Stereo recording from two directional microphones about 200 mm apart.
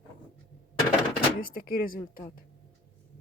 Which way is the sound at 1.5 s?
50° left (ahead or behind).